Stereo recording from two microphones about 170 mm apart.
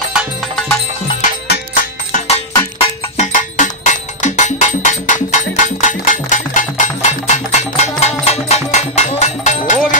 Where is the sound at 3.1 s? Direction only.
45° left (ahead or behind).